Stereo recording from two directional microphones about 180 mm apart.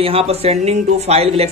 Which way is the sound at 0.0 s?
30° right (ahead or behind).